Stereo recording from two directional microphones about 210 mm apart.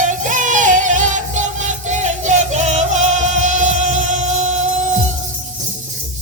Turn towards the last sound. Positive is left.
turn(degrees=-35)  # may be behind; listen again after turning